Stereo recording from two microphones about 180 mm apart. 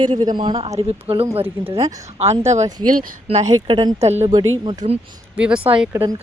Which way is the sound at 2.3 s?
40° right (ahead or behind).